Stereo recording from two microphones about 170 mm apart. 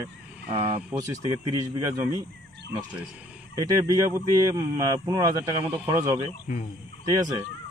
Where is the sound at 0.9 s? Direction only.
20° right (ahead or behind).